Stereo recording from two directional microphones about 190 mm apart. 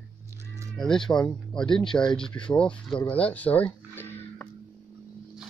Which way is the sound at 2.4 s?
5° left (ahead or behind).